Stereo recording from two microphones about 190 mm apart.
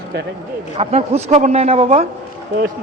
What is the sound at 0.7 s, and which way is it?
Speech, 30° right (ahead or behind).